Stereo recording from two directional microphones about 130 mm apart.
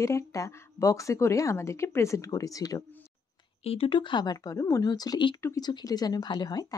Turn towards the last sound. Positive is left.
turn(degrees=30)  # may be behind; listen again after turning